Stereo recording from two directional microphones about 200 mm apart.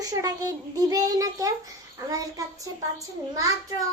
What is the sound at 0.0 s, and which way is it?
A child's voice, 20° right (ahead or behind).